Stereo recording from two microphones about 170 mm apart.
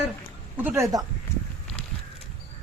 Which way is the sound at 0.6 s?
10° right (ahead or behind).